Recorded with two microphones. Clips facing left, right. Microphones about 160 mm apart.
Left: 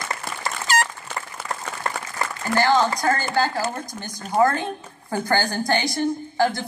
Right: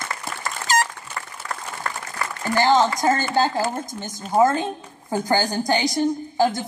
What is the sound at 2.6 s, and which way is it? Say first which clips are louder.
A woman's voice: right 2 dB; 20° right (ahead or behind).